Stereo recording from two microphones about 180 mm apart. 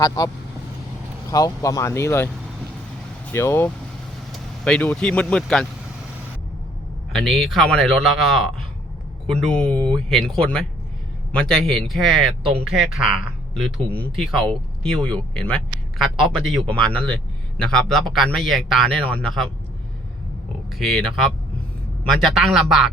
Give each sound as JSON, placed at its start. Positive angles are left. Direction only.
{"t": 1.3, "sound": "speech", "side_deg": 20}
{"t": 3.3, "sound": "speech", "side_deg": 15}
{"t": 7.1, "sound": "speech", "side_deg": 0}
{"t": 20.7, "sound": "speech", "side_deg": 0}